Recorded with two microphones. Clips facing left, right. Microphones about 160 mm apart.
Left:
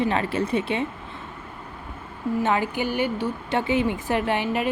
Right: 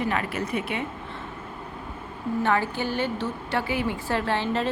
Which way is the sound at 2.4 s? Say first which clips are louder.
Even; 15° left (ahead or behind).